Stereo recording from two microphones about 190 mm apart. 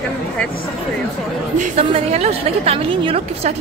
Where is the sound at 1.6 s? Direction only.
30° right (ahead or behind).